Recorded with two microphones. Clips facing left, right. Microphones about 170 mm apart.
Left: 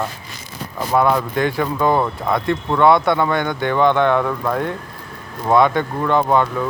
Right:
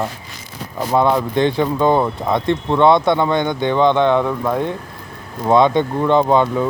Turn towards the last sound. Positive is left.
turn(degrees=-20)  # may be behind; listen again after turning